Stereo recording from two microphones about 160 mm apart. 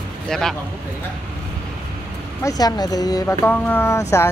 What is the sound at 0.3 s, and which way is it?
Speech, 5° left (ahead or behind).